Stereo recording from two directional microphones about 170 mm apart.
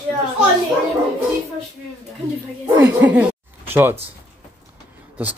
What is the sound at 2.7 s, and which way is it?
Speech, 10° right (ahead or behind).